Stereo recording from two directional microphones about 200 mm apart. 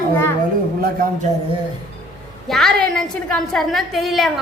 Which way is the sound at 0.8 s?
45° right (ahead or behind).